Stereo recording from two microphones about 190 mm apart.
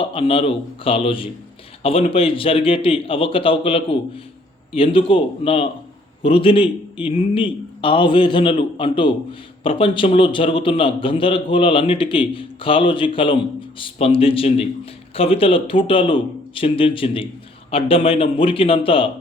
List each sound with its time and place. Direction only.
0.0 s a man's voice: 30° left (ahead or behind)